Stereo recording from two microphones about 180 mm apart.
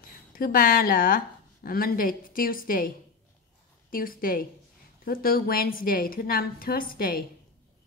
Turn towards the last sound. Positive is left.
turn(degrees=55)  # may be behind; listen again after turning